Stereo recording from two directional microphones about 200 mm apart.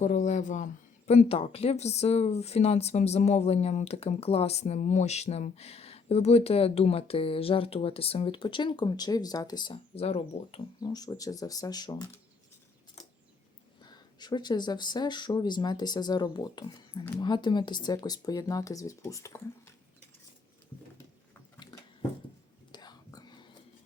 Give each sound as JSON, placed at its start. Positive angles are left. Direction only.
{"t": 0.0, "sound": "speech", "side_deg": 40}
{"t": 10.8, "sound": "speech", "side_deg": 20}
{"t": 13.8, "sound": "speech", "side_deg": 20}
{"t": 22.7, "sound": "whispering", "side_deg": 20}